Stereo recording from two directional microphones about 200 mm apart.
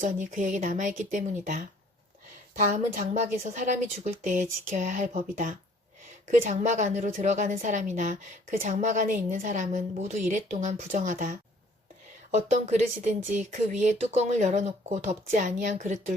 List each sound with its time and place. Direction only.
0.0 s a woman's voice: 40° right (ahead or behind)
2.9 s a woman's voice: 40° right (ahead or behind)